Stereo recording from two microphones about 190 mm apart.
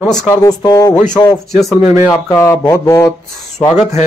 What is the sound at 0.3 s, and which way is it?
Speech, 20° left (ahead or behind).